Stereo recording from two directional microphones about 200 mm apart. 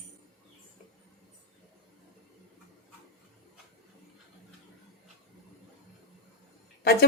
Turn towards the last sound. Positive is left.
turn(degrees=55)  # may be behind; listen again after turning